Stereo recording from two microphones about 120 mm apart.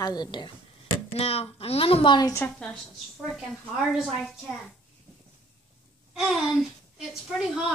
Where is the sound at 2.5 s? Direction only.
5° left (ahead or behind).